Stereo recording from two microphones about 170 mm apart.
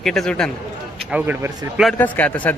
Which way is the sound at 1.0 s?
5° right (ahead or behind).